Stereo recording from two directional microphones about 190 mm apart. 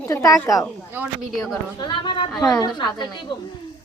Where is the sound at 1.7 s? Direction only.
25° left (ahead or behind).